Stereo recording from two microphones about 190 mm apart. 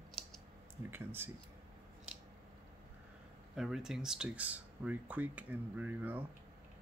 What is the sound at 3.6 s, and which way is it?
Speech, 5° right (ahead or behind).